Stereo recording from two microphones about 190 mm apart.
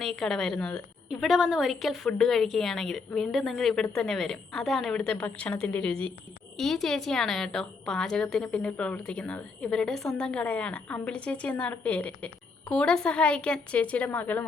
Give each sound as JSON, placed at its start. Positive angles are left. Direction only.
{"t": 0.0, "sound": "a woman's voice", "side_deg": 0}